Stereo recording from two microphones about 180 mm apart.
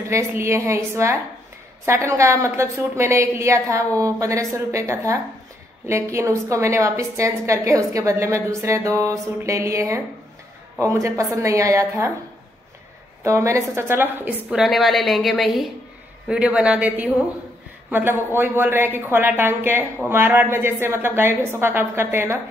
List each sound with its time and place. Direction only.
0.1 s a woman's voice: 15° right (ahead or behind)
13.2 s a woman's voice: 15° right (ahead or behind)